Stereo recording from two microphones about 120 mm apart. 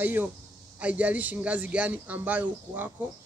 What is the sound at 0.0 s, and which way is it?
Speech, 15° right (ahead or behind).